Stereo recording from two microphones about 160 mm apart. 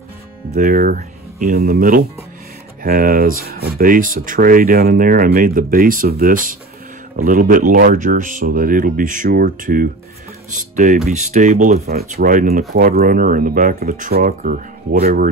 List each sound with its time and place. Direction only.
0.6 s speech: 65° right (ahead or behind)
11.8 s speech: 75° right (ahead or behind)